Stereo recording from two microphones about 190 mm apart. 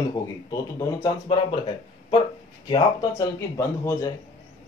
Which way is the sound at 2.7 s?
20° left (ahead or behind).